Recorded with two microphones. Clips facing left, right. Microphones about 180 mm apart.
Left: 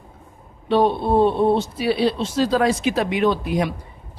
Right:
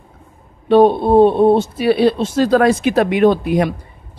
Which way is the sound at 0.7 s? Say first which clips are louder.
Right 7 dB; 50° right (ahead or behind).